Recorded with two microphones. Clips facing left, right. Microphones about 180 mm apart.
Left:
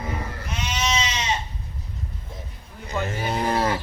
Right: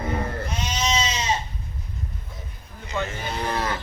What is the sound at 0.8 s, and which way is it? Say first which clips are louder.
Goat: right 1 dB; 30° right (ahead or behind).